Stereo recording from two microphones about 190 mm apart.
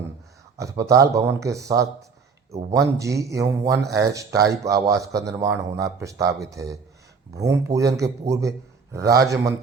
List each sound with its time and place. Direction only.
0.5 s speech: 15° right (ahead or behind)